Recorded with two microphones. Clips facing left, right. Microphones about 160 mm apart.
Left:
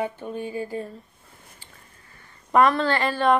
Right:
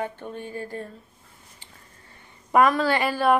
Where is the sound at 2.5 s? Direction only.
10° right (ahead or behind).